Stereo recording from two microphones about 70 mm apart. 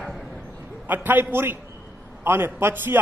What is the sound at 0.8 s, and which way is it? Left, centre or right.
A man's voice, right.